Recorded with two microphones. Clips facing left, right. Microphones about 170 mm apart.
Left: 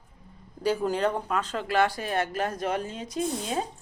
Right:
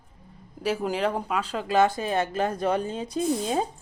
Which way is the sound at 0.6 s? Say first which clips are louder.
Left 1 dB; 5° right (ahead or behind).